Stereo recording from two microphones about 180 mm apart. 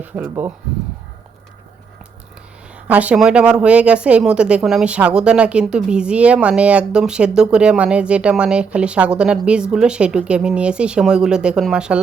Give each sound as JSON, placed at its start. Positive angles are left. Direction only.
{"t": 0.0, "sound": "speech", "side_deg": -10}
{"t": 2.7, "sound": "speech", "side_deg": -10}